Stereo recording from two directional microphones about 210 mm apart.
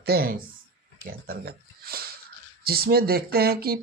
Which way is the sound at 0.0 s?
45° right (ahead or behind).